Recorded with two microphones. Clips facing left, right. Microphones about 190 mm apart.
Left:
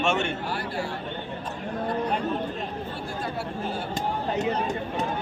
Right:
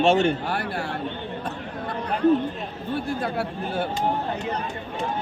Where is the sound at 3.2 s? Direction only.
60° right (ahead or behind).